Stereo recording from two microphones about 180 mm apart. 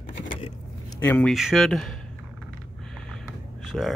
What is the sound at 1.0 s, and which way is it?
Speech, 10° left (ahead or behind).